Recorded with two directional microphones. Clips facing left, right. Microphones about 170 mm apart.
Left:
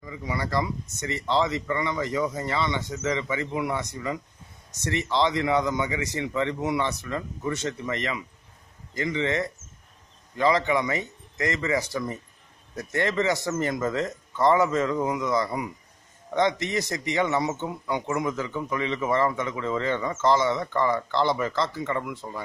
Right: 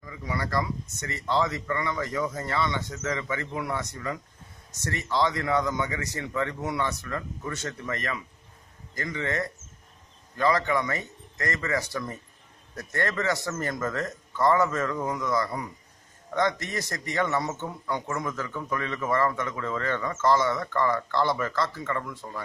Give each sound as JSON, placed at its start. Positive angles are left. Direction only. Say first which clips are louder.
{"t": 0.0, "sound": "a man's voice", "louder": "left 2 dB", "side_deg": 15}